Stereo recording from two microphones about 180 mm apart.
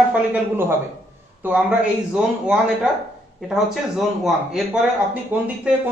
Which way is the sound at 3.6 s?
Centre (ahead or behind).